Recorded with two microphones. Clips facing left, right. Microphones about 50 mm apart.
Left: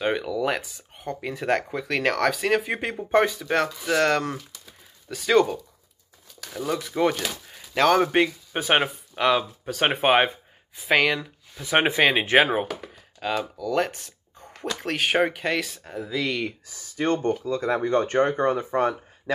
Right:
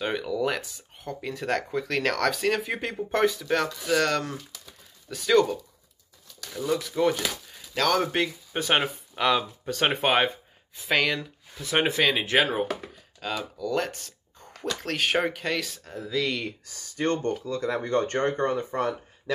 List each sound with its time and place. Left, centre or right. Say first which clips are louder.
0.0 s speech: left 2 dB; centre
5.0 s speech: left 1 dB; centre
6.9 s a man's voice: left 4 dB; left
11.7 s a man's voice: left 3 dB; left